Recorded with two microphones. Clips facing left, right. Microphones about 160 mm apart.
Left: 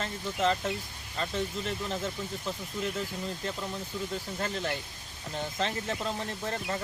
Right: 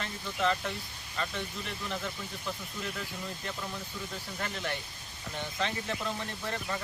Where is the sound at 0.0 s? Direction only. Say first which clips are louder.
Left 2 dB; 35° left (ahead or behind).